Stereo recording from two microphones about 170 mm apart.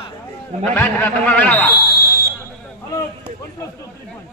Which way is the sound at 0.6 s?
10° left (ahead or behind).